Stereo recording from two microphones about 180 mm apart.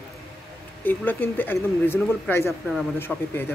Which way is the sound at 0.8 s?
10° left (ahead or behind).